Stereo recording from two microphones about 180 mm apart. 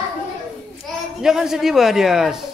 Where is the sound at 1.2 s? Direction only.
5° right (ahead or behind).